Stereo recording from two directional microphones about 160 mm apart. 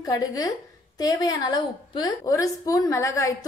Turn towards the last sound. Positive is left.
turn(degrees=20)  # may be behind; listen again after turning